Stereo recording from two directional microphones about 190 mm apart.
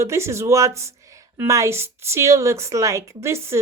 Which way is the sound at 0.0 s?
15° right (ahead or behind).